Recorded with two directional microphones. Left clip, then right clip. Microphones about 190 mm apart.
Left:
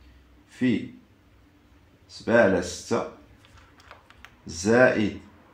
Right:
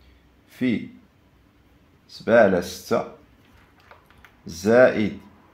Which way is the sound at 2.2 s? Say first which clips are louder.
Right 4 dB; 40° right (ahead or behind).